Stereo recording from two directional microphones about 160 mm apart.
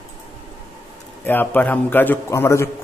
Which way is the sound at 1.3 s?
10° left (ahead or behind).